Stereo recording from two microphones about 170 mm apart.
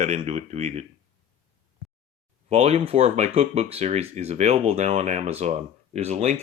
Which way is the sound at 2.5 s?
35° right (ahead or behind).